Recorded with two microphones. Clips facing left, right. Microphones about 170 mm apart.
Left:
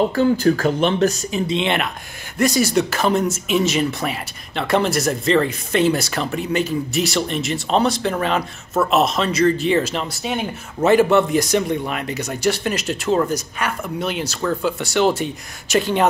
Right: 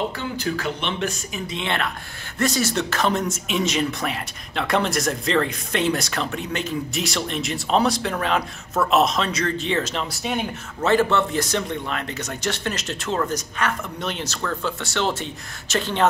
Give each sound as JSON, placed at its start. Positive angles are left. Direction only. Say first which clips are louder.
{"t": 0.1, "sound": "speech", "louder": "left 11 dB", "side_deg": 45}
{"t": 1.5, "sound": "speech", "louder": "left 3 dB", "side_deg": 20}
{"t": 10.8, "sound": "a man's voice", "louder": "left 5 dB", "side_deg": 15}